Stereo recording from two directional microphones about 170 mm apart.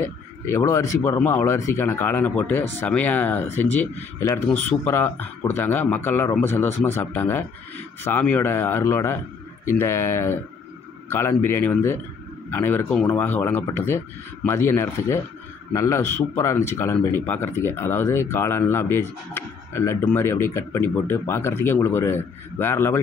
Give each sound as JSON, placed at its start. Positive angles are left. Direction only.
{"t": 0.5, "sound": "a man's voice", "side_deg": 15}